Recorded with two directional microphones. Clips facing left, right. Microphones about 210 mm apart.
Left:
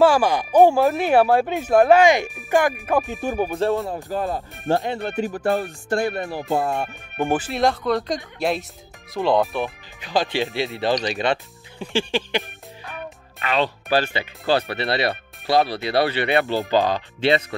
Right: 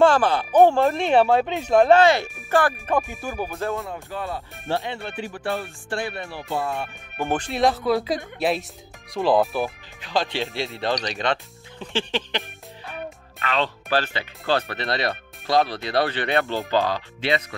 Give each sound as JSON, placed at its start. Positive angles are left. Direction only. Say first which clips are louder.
{"t": 0.0, "sound": "speech", "louder": "left 1 dB", "side_deg": 10}
{"t": 3.1, "sound": "music", "louder": "left 6 dB", "side_deg": 20}
{"t": 3.9, "sound": "speech", "louder": "left 5 dB", "side_deg": 40}
{"t": 7.2, "sound": "speech", "louder": "left 2 dB", "side_deg": 10}
{"t": 17.2, "sound": "speech", "louder": "left 5 dB", "side_deg": 30}